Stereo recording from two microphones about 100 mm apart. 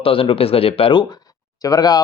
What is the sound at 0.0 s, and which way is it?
Speech, 65° left (ahead or behind).